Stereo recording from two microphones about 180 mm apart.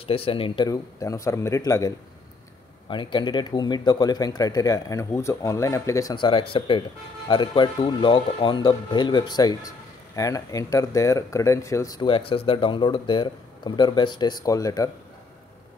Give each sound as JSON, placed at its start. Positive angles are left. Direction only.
{"t": 0.0, "sound": "speech", "side_deg": 30}
{"t": 0.7, "sound": "a man's voice", "side_deg": 20}